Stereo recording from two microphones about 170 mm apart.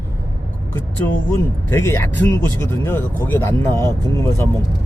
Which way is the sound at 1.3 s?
15° left (ahead or behind).